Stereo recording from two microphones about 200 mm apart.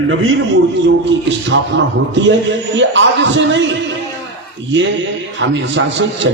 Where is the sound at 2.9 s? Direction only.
65° right (ahead or behind).